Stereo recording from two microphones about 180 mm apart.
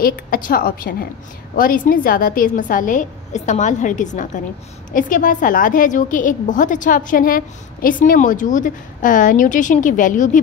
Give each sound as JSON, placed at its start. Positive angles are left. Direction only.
{"t": 0.0, "sound": "a woman's voice", "side_deg": 50}